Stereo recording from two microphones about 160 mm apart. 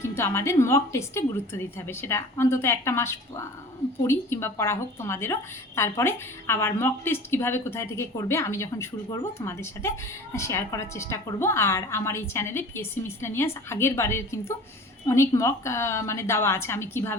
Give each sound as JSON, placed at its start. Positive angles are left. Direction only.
{"t": 0.0, "sound": "a woman's voice", "side_deg": 15}